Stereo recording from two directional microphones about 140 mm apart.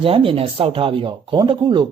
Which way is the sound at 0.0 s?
40° right (ahead or behind).